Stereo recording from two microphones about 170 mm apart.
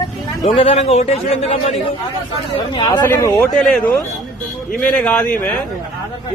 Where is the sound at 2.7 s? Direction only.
25° left (ahead or behind).